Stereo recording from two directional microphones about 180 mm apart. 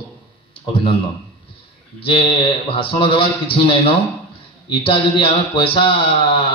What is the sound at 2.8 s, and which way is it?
Mantra, 30° left (ahead or behind).